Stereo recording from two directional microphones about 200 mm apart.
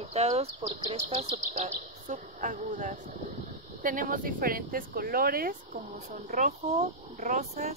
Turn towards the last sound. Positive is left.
turn(degrees=-35)  # may be behind; listen again after turning